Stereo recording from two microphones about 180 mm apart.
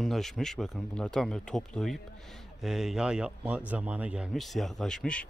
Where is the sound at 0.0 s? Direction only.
Centre (ahead or behind).